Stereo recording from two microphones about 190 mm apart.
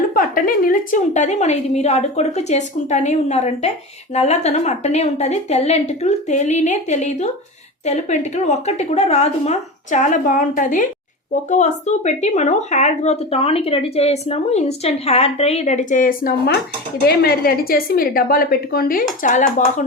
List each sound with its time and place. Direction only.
0.1 s a woman's voice: 45° left (ahead or behind)